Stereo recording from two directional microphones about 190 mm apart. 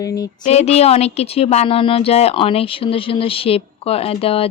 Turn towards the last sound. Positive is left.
turn(degrees=30)  # may be behind; listen again after turning